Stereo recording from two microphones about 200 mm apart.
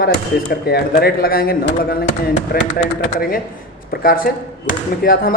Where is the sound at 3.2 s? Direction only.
45° left (ahead or behind).